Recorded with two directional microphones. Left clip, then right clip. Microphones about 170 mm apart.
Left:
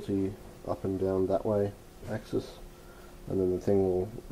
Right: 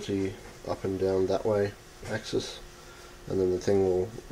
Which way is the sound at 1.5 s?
Centre (ahead or behind).